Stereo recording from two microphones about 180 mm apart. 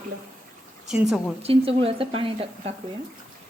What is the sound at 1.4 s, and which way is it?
Speech, 30° right (ahead or behind).